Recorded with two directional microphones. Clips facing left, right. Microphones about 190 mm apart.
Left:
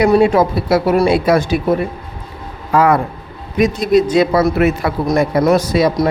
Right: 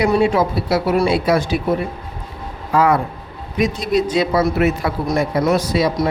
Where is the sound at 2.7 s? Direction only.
50° left (ahead or behind).